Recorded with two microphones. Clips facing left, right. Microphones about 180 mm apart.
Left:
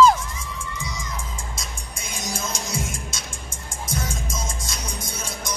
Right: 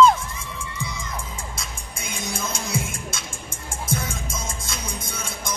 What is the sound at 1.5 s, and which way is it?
Music, 55° right (ahead or behind).